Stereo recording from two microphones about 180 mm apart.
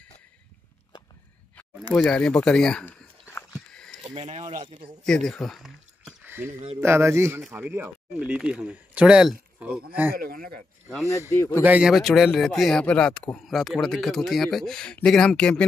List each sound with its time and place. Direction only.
2.0 s walk: 5° left (ahead or behind)
4.0 s speech: 30° right (ahead or behind)
5.0 s speech: 5° left (ahead or behind)
10.1 s speech: 55° right (ahead or behind)
11.1 s speech: 15° left (ahead or behind)
11.6 s speech: 5° right (ahead or behind)